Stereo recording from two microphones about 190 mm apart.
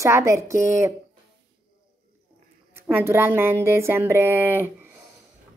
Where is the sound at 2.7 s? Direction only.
10° right (ahead or behind).